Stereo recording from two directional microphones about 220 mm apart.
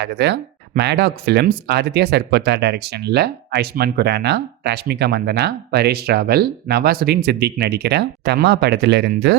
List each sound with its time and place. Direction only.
0.0 s speech: 50° right (ahead or behind)